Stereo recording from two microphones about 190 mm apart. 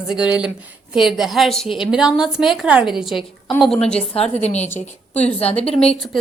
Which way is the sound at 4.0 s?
35° left (ahead or behind).